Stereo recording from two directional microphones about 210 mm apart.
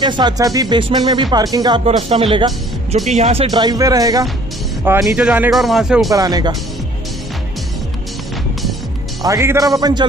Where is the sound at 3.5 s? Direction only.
20° right (ahead or behind); by 6.1 s centre (ahead or behind).